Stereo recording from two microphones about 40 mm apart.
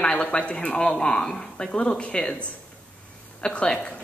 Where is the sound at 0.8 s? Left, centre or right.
Centre.